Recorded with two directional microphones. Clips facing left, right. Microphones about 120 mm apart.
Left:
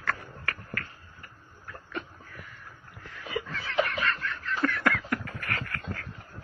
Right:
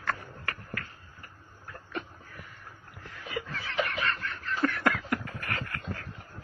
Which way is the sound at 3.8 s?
25° right (ahead or behind).